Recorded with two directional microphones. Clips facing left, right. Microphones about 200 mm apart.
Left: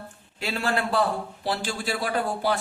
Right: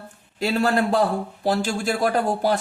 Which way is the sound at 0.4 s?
40° right (ahead or behind).